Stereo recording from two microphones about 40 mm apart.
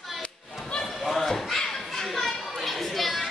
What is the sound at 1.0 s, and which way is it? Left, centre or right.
Children playing, centre.